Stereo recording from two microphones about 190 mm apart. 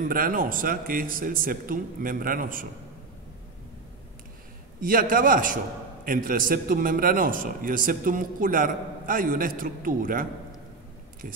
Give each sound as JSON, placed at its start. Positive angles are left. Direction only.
{"t": 0.1, "sound": "a man's voice", "side_deg": -45}
{"t": 4.8, "sound": "a man's voice", "side_deg": -50}